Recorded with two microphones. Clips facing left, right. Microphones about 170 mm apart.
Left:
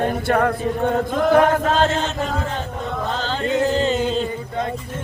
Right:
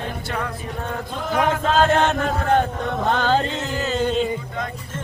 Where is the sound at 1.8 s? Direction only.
60° right (ahead or behind).